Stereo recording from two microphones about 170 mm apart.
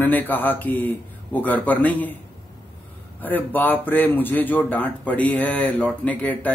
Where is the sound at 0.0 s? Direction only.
10° left (ahead or behind).